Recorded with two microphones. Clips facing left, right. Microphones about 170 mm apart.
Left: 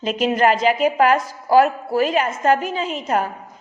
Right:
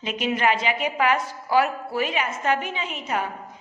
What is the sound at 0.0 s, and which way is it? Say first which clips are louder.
A woman's voice: left 6 dB; 40° left (ahead or behind).